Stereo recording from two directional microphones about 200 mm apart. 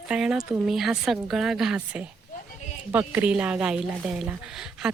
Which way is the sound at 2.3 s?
35° left (ahead or behind).